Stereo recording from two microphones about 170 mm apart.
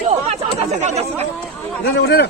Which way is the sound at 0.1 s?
40° right (ahead or behind).